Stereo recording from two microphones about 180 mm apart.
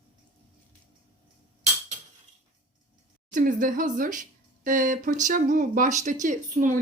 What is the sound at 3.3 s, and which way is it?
Speech, 45° right (ahead or behind).